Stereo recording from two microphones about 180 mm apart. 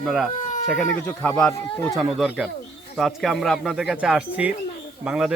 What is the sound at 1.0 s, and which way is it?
Speech, 10° left (ahead or behind).